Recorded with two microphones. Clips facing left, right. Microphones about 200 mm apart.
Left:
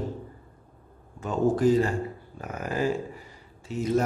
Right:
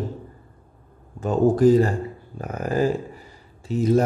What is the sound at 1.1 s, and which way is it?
A man's voice, 40° right (ahead or behind).